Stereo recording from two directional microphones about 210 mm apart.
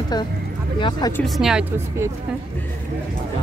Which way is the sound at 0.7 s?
25° left (ahead or behind).